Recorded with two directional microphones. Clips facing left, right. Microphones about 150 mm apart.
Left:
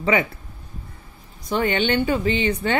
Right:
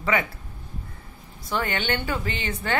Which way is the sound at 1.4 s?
20° left (ahead or behind).